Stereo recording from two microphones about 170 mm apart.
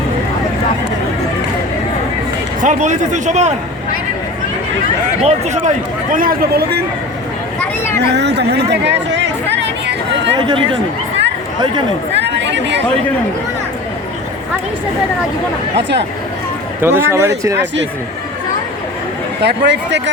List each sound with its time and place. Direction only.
2.6 s speech: 45° right (ahead or behind)
5.2 s a man's voice: 45° right (ahead or behind); by 6.8 s 70° right (ahead or behind)
7.9 s speech: 80° right
8.7 s chatter: 90° right
10.4 s speech: 30° right (ahead or behind)
12.1 s chatter: 90° right
16.8 s speech: 15° right (ahead or behind)
19.4 s speech: 85° right